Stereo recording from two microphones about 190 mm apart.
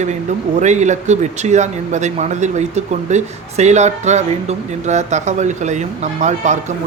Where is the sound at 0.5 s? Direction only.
40° right (ahead or behind).